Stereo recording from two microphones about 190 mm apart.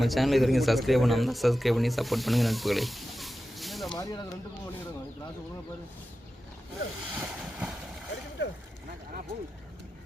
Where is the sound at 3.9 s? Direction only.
20° left (ahead or behind).